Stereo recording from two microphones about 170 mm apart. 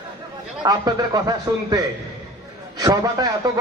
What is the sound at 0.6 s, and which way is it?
A man's voice, 25° right (ahead or behind).